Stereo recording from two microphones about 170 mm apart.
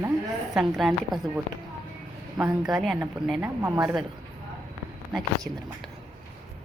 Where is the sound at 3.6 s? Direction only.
15° right (ahead or behind).